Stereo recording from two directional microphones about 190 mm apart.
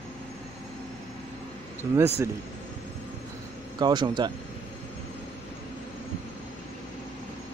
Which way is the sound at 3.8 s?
25° right (ahead or behind).